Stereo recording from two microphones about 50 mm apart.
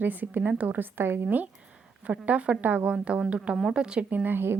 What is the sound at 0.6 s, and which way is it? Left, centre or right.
Speech, right.